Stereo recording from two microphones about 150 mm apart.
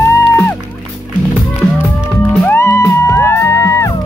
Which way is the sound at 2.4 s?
15° left (ahead or behind).